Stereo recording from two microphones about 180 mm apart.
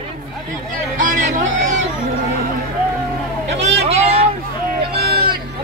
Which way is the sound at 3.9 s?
35° right (ahead or behind).